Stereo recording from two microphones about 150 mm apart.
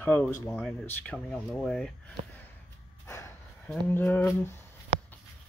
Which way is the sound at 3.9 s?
15° left (ahead or behind).